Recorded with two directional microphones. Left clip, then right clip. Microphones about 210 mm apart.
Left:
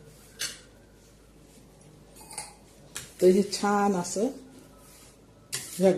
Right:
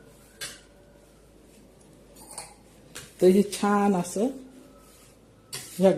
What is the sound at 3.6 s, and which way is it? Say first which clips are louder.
Speech: even; 15° right (ahead or behind).